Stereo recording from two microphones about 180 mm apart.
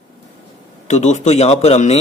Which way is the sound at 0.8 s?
40° left (ahead or behind).